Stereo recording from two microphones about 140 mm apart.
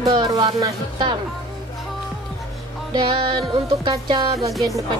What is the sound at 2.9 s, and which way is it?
Speech, 35° right (ahead or behind).